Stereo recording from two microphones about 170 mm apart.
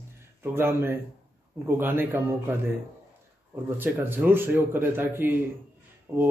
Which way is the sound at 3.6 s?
15° right (ahead or behind).